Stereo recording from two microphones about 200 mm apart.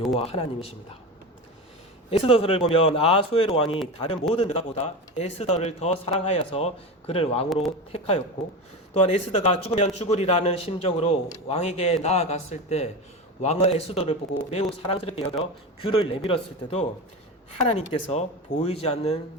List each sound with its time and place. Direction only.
0.2 s speech: 30° left (ahead or behind)
2.0 s a man's voice: 30° left (ahead or behind)